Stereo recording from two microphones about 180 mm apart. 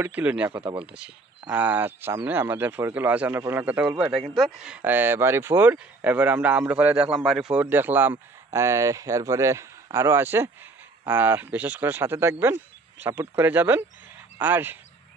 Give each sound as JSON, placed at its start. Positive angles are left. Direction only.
{"t": 0.0, "sound": "speech", "side_deg": -10}
{"t": 0.5, "sound": "speech", "side_deg": -25}
{"t": 0.7, "sound": "speech", "side_deg": -5}